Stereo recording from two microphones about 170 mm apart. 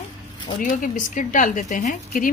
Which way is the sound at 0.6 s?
50° left (ahead or behind).